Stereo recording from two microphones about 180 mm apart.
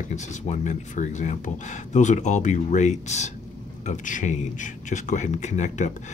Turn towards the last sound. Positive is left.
turn(degrees=40)  # may be behind; listen again after turning